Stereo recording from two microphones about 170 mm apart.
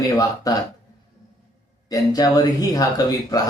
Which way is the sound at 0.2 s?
20° left (ahead or behind).